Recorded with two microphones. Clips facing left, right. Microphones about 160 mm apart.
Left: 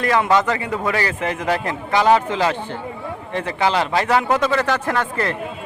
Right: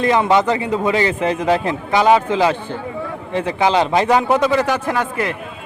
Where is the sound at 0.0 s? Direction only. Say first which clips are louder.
Right 3 dB; 20° right (ahead or behind).